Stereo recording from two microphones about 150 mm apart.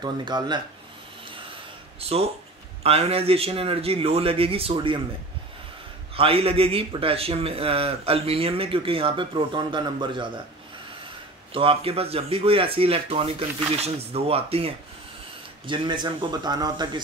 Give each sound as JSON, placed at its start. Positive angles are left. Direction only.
{"t": 0.0, "sound": "speech", "side_deg": -30}
{"t": 2.0, "sound": "a man's voice", "side_deg": -40}
{"t": 6.1, "sound": "a man's voice", "side_deg": -40}
{"t": 11.5, "sound": "a man's voice", "side_deg": -40}